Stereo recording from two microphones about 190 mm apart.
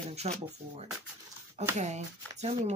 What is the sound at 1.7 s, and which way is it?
Speech, 35° right (ahead or behind).